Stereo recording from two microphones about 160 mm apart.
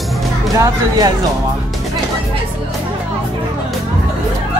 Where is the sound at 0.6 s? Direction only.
25° right (ahead or behind).